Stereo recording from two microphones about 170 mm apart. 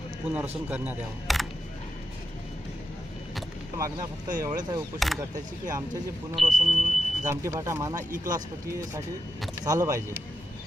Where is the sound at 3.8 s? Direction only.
20° right (ahead or behind).